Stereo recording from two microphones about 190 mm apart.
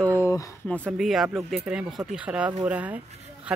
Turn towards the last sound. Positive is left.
turn(degrees=-10)  # may be behind; listen again after turning